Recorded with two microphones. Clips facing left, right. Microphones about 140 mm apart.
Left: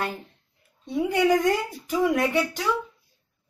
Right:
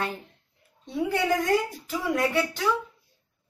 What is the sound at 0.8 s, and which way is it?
A woman's voice, 15° left (ahead or behind).